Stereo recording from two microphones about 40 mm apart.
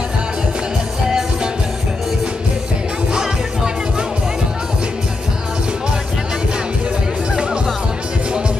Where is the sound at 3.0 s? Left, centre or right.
Centre.